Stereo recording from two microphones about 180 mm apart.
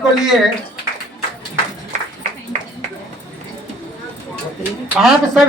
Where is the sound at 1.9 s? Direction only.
40° right (ahead or behind).